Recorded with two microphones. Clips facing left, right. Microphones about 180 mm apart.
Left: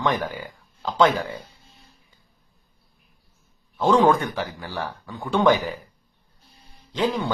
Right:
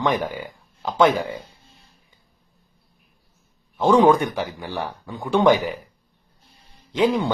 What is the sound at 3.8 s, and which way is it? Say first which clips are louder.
A man's voice: right 3 dB; 15° right (ahead or behind).